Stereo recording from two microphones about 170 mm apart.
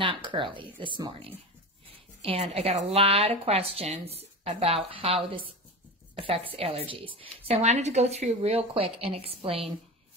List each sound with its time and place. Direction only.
0.0 s a woman's voice: 30° right (ahead or behind)